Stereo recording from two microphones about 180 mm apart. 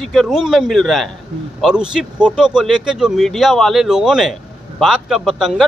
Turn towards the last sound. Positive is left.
turn(degrees=0)  # may be behind; listen again after turning